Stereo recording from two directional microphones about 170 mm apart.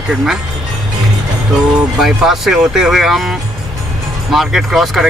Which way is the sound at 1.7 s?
5° right (ahead or behind).